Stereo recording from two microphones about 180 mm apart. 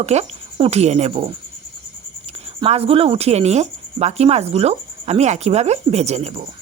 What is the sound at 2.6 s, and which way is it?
Speech, 35° right (ahead or behind).